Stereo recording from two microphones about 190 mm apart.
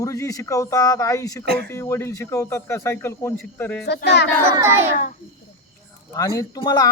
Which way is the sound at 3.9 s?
60° left (ahead or behind).